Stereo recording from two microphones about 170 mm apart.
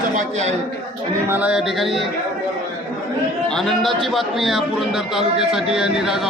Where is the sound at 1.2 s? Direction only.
10° right (ahead or behind).